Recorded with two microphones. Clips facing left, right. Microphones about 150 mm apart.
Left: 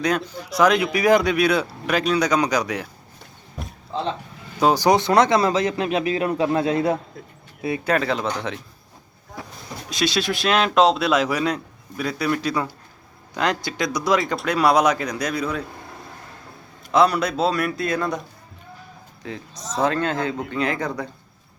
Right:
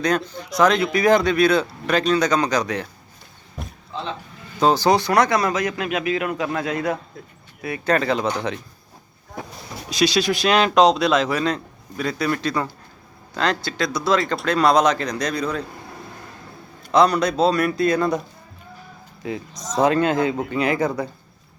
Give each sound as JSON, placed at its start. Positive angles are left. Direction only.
{"t": 0.3, "sound": "speech", "side_deg": 5}
{"t": 3.6, "sound": "a sound", "side_deg": 0}
{"t": 4.7, "sound": "speech", "side_deg": 15}
{"t": 7.9, "sound": "a man's voice", "side_deg": 0}
{"t": 9.9, "sound": "a man's voice", "side_deg": 0}
{"t": 16.9, "sound": "a man's voice", "side_deg": 5}
{"t": 19.2, "sound": "speech", "side_deg": -10}